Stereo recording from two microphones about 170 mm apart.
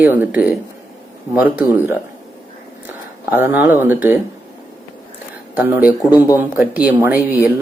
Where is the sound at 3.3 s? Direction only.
10° right (ahead or behind).